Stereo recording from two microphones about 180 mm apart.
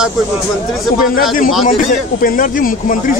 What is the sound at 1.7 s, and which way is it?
Speech, 45° left (ahead or behind).